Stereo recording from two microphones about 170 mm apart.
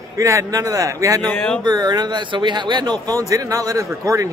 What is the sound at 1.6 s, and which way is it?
Speech, 25° right (ahead or behind).